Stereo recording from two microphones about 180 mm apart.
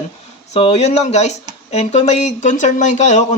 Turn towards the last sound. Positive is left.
turn(degrees=40)  # may be behind; listen again after turning